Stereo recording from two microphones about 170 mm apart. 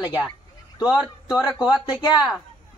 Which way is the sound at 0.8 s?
5° right (ahead or behind).